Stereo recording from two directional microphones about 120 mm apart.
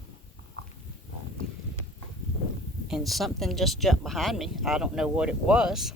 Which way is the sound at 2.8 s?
Centre (ahead or behind).